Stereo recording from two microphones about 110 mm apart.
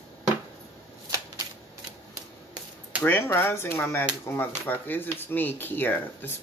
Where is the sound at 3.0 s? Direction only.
20° left (ahead or behind).